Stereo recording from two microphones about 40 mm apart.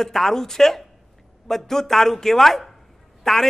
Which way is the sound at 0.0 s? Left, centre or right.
Centre.